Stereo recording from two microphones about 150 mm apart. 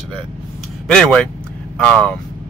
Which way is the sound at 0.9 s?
5° left (ahead or behind).